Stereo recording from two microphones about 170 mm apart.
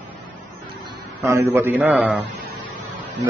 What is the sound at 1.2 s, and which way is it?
Speech, 15° right (ahead or behind).